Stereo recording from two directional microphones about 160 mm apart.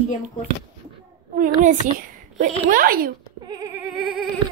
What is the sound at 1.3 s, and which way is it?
A child's voice, 55° right (ahead or behind).